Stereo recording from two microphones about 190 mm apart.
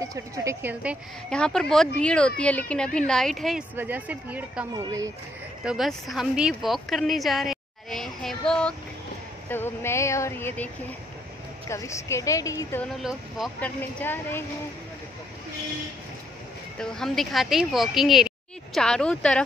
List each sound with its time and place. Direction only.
0.0 s speech: 15° right (ahead or behind)
1.3 s speech: 5° left (ahead or behind); by 5.1 s 15° right (ahead or behind)
5.6 s speech: centre (ahead or behind); by 12.8 s 15° left (ahead or behind)
12.8 s speech: centre (ahead or behind)
16.7 s a woman's voice: 5° left (ahead or behind)